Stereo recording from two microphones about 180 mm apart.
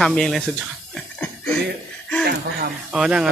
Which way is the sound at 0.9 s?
5° left (ahead or behind).